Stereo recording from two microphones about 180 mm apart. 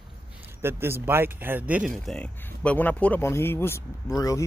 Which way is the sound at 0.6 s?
15° right (ahead or behind).